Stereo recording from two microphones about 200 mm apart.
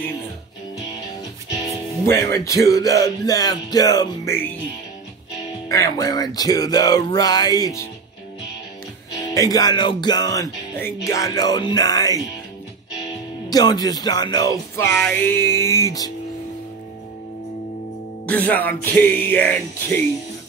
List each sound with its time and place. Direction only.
2.0 s speech: 15° left (ahead or behind)
5.7 s speech: 15° left (ahead or behind)
9.3 s speech: 15° left (ahead or behind)
13.5 s speech: 20° left (ahead or behind)
15.0 s speech: 5° left (ahead or behind)
18.2 s speech: 10° left (ahead or behind)